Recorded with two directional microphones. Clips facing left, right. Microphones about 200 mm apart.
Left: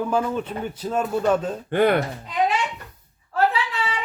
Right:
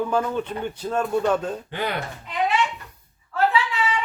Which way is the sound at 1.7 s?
55° left (ahead or behind).